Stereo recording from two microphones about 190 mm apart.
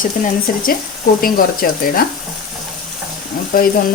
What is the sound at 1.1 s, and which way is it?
Speech, 50° left (ahead or behind).